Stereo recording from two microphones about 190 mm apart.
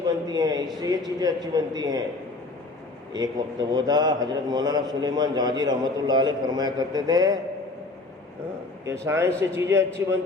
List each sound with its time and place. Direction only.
0.1 s a sound: 20° right (ahead or behind)
0.8 s a man's voice: 20° right (ahead or behind)
3.1 s a man's voice: 20° right (ahead or behind)
8.9 s a man's voice: 15° right (ahead or behind)